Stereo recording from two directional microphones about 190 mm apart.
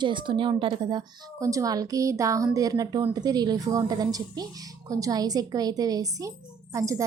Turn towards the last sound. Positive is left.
turn(degrees=-15)  # may be behind; listen again after turning